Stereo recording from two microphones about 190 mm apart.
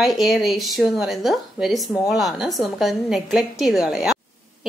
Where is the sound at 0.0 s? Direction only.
Centre (ahead or behind).